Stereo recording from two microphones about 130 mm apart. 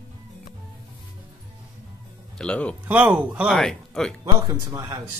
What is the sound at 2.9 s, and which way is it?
Speech, 10° right (ahead or behind).